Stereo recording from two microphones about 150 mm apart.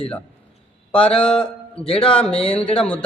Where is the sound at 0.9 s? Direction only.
5° left (ahead or behind).